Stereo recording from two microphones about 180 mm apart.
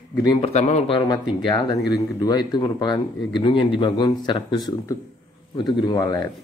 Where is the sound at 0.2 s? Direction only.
20° left (ahead or behind).